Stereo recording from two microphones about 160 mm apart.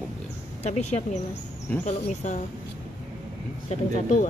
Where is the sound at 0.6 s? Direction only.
45° left (ahead or behind).